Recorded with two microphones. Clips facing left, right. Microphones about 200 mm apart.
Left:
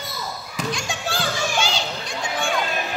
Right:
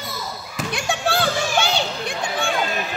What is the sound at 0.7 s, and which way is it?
Children playing, 60° right (ahead or behind).